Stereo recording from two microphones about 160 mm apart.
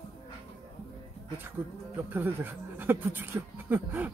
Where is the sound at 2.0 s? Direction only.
10° right (ahead or behind).